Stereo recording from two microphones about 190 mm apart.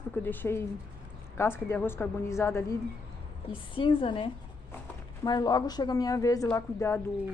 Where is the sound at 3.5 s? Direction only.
25° left (ahead or behind).